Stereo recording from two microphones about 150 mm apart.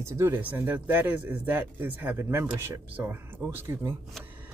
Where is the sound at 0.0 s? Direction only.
20° right (ahead or behind).